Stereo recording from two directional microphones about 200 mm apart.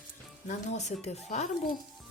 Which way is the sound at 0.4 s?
35° left (ahead or behind).